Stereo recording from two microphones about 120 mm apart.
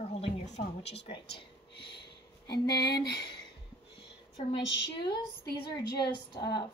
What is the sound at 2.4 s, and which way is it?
Speech, 35° left (ahead or behind).